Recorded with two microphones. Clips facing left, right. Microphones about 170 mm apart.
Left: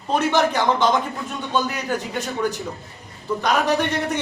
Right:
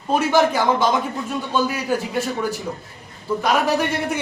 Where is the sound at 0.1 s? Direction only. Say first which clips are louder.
Right 2 dB; 5° right (ahead or behind).